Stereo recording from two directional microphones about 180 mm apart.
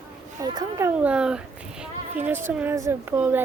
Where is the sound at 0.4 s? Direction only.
20° right (ahead or behind).